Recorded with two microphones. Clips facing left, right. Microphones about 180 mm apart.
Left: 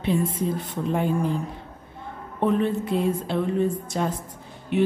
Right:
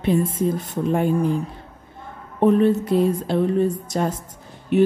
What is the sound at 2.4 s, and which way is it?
A woman's voice, 40° right (ahead or behind).